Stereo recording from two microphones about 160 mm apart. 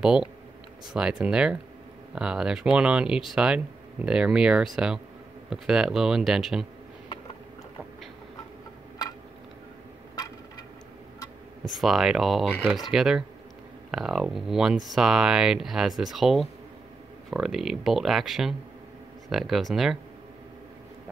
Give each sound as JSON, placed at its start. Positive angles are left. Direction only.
{"t": 0.0, "sound": "speech", "side_deg": -5}
{"t": 11.6, "sound": "speech", "side_deg": 0}